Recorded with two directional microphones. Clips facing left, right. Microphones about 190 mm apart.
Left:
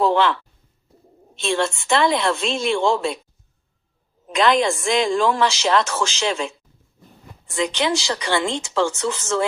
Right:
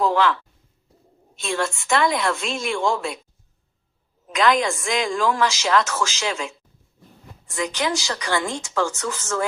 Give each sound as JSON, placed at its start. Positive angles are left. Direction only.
{"t": 0.0, "sound": "speech", "side_deg": 25}
{"t": 1.4, "sound": "a woman's voice", "side_deg": 30}
{"t": 4.4, "sound": "a woman's voice", "side_deg": 30}